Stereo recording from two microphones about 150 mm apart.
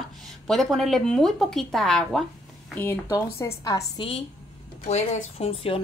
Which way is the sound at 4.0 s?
40° left (ahead or behind).